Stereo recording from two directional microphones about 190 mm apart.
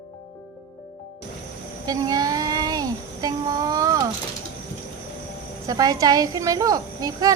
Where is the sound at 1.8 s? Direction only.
20° right (ahead or behind).